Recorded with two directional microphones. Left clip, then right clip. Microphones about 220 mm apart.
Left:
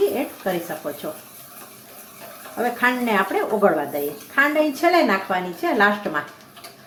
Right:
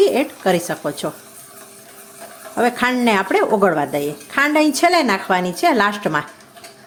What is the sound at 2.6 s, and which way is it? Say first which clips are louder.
A woman's voice: right 3 dB; 55° right (ahead or behind).